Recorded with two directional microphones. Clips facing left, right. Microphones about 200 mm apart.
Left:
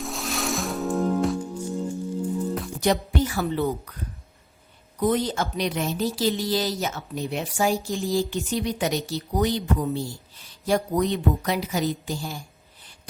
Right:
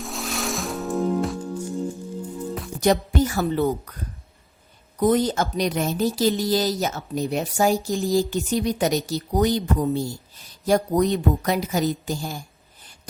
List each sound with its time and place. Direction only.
0.0 s music: centre (ahead or behind)
2.8 s a woman's voice: 45° right (ahead or behind)
4.9 s a woman's voice: 45° right (ahead or behind)